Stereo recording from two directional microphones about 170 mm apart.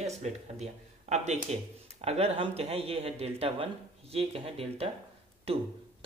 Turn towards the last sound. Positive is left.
turn(degrees=-35)  # may be behind; listen again after turning